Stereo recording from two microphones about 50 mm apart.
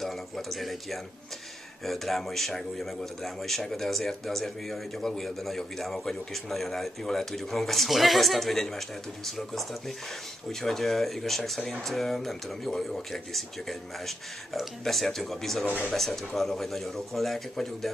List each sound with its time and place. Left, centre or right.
0.0 s a man's voice: centre
15.6 s speech: right
15.9 s a man's voice: centre